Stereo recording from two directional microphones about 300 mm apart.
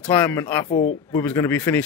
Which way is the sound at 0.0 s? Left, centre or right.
Centre.